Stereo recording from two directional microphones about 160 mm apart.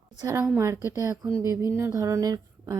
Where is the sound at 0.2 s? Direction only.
20° right (ahead or behind).